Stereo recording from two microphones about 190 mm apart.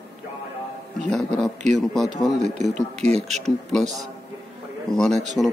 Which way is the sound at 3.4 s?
Centre (ahead or behind).